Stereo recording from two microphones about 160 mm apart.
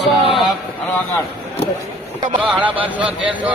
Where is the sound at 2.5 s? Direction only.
10° right (ahead or behind).